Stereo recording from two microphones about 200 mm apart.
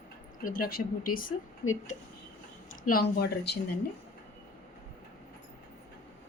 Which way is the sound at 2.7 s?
45° left (ahead or behind).